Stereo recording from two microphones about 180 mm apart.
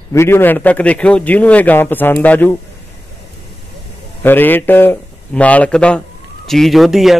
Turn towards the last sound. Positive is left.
turn(degrees=0)  # may be behind; listen again after turning